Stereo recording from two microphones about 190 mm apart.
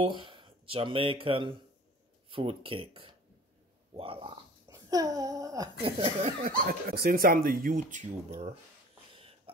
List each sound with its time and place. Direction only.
0.0 s speech: 25° right (ahead or behind)
5.8 s speech: 30° right (ahead or behind)
6.4 s speech: 50° right (ahead or behind)
7.9 s speech: 35° right (ahead or behind)